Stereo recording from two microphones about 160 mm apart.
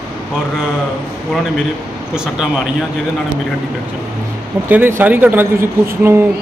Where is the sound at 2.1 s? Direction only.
5° right (ahead or behind).